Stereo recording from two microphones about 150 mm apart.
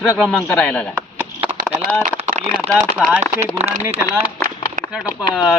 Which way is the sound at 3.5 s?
45° right (ahead or behind).